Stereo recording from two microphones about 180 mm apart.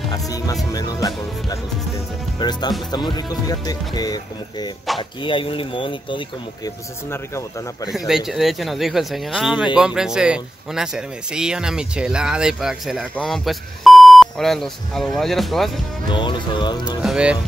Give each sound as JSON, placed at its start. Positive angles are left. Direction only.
{"t": 0.1, "sound": "speech", "side_deg": 20}
{"t": 7.1, "sound": "speech", "side_deg": 15}
{"t": 8.3, "sound": "speech", "side_deg": 0}
{"t": 16.1, "sound": "speech", "side_deg": 25}
{"t": 17.0, "sound": "speech", "side_deg": -5}